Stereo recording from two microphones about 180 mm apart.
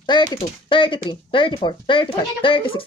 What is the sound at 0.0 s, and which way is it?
Speech, 25° left (ahead or behind).